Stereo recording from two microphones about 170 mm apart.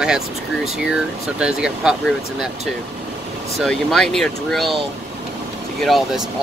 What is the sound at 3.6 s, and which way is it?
Speech, centre (ahead or behind).